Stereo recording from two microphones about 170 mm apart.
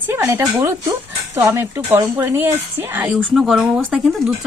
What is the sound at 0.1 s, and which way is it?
Speech, 15° right (ahead or behind).